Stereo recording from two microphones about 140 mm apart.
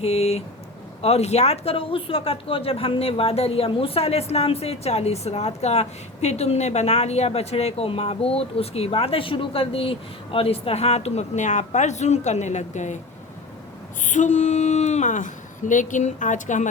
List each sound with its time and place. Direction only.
0.0 s speech: 50° left (ahead or behind)
14.0 s speech: 65° left (ahead or behind)